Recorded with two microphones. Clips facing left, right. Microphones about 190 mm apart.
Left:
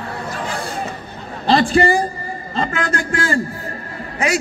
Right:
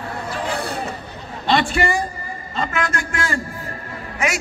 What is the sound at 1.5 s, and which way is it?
A woman's voice, 35° left (ahead or behind).